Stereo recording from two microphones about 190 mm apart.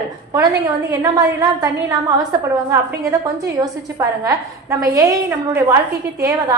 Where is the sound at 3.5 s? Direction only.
15° right (ahead or behind).